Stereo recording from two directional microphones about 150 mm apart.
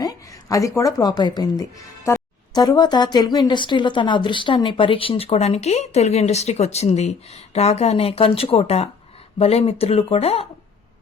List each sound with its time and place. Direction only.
0.0 s a woman's voice: 20° left (ahead or behind); by 10.4 s 40° left (ahead or behind)